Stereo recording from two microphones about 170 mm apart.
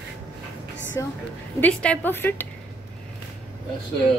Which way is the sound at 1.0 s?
20° left (ahead or behind).